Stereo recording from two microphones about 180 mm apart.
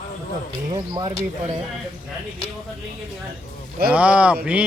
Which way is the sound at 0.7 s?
20° right (ahead or behind).